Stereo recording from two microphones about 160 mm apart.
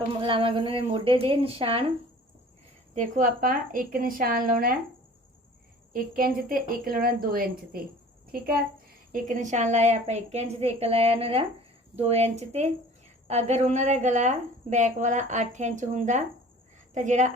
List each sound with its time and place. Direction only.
0.1 s speech: 35° right (ahead or behind)
2.9 s a woman's voice: 50° right (ahead or behind)
5.9 s a woman's voice: 65° right (ahead or behind); by 17.3 s 50° right (ahead or behind)